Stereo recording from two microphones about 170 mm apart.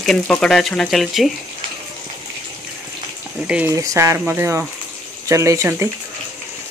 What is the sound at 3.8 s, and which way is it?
Speech, 20° right (ahead or behind).